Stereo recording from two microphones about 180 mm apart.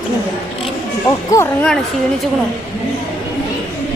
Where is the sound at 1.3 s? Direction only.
10° left (ahead or behind).